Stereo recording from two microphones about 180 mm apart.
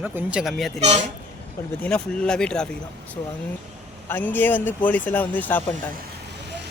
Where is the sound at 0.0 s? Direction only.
5° right (ahead or behind).